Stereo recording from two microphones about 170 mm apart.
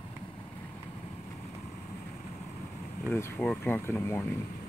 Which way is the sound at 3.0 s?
10° left (ahead or behind).